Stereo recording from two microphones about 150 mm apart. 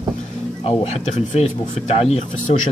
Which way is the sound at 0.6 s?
45° left (ahead or behind).